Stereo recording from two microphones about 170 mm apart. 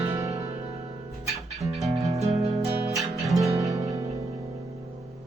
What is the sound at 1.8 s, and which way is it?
Music, 20° right (ahead or behind).